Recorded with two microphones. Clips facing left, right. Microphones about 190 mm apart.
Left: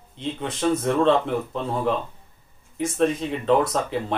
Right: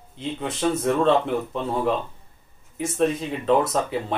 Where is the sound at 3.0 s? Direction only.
Centre (ahead or behind).